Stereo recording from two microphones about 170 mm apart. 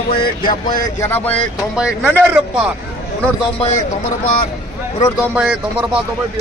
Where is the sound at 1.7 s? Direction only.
5° right (ahead or behind).